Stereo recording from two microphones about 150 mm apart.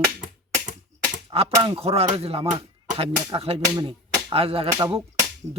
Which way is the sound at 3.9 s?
40° right (ahead or behind).